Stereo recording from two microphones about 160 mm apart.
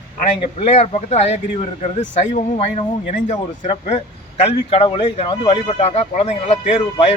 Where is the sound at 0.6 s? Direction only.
40° left (ahead or behind).